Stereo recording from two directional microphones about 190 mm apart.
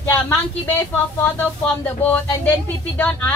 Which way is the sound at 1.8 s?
10° left (ahead or behind).